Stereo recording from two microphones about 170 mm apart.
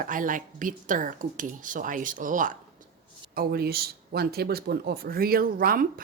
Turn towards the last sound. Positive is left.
turn(degrees=-60)  # may be behind; listen again after turning